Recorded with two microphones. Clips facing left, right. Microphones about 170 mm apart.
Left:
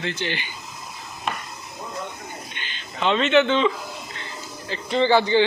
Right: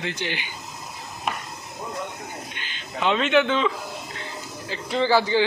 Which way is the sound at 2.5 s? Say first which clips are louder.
Even; 5° right (ahead or behind).